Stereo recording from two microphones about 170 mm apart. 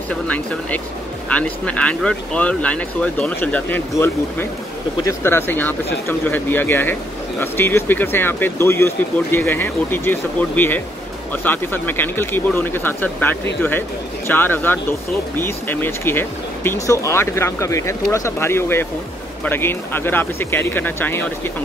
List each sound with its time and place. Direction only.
0.1 s speech: 5° left (ahead or behind)